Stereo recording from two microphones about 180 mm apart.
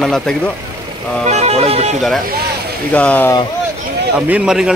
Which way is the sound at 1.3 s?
35° right (ahead or behind).